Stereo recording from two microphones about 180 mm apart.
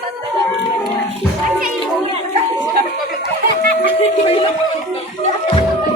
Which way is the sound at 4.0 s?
35° left (ahead or behind).